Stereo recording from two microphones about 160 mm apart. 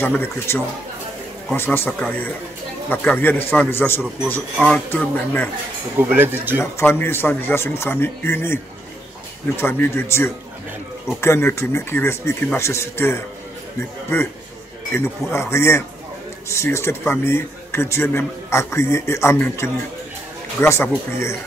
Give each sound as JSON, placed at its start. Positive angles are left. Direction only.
{"t": 0.0, "sound": "a man's voice", "side_deg": 15}
{"t": 5.9, "sound": "speech", "side_deg": -10}
{"t": 6.6, "sound": "a man's voice", "side_deg": 15}
{"t": 9.6, "sound": "a man's voice", "side_deg": 15}